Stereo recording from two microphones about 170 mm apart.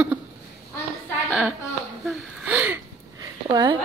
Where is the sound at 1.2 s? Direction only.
Centre (ahead or behind).